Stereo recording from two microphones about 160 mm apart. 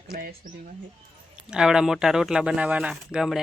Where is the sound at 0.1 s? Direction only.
70° right (ahead or behind).